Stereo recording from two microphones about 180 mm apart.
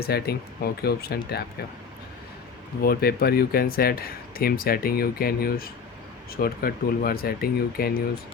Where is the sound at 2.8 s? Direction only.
55° left (ahead or behind).